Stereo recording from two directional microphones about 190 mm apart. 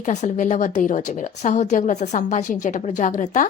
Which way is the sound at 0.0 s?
40° left (ahead or behind).